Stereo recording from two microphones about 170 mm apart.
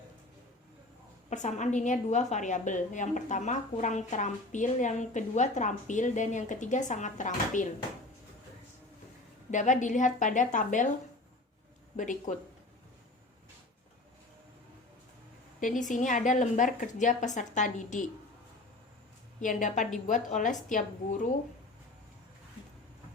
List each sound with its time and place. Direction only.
1.3 s a woman's voice: 45° left (ahead or behind)
9.5 s a woman's voice: 45° left (ahead or behind)
11.9 s a woman's voice: 50° left (ahead or behind)
15.6 s a woman's voice: 50° left (ahead or behind)
19.4 s a woman's voice: 50° left (ahead or behind)